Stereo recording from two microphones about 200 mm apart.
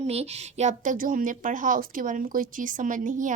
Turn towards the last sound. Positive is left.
turn(degrees=-40)  # may be behind; listen again after turning